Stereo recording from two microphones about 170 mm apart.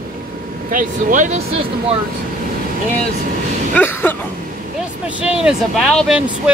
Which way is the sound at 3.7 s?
10° left (ahead or behind).